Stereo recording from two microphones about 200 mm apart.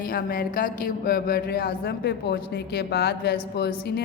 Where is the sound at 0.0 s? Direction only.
45° left (ahead or behind).